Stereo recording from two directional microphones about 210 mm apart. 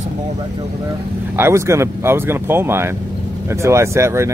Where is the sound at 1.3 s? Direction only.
10° right (ahead or behind).